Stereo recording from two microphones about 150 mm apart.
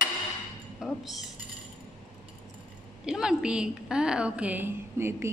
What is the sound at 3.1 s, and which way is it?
A woman's voice, 5° right (ahead or behind).